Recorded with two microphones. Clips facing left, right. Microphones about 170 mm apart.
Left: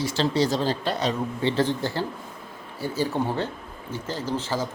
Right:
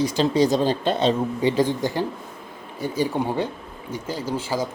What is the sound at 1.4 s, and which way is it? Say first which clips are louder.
Speech: right 2 dB; 15° right (ahead or behind).